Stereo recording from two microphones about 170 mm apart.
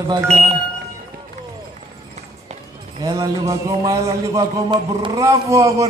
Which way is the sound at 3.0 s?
20° right (ahead or behind).